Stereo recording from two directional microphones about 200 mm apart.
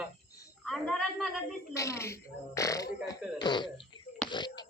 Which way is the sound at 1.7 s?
15° left (ahead or behind).